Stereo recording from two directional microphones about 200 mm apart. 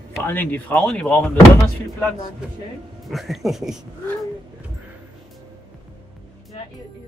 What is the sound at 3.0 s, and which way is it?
Speech, centre (ahead or behind).